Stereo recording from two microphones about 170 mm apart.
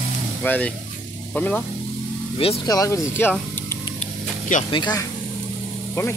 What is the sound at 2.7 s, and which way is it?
Speech, 20° left (ahead or behind).